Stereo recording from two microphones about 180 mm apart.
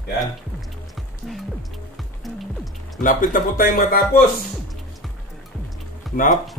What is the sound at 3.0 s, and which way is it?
Speech, 50° left (ahead or behind).